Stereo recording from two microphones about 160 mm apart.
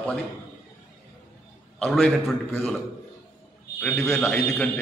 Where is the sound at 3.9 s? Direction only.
20° left (ahead or behind).